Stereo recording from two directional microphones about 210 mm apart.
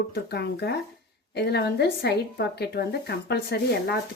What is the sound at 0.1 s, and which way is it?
Speech, 50° left (ahead or behind).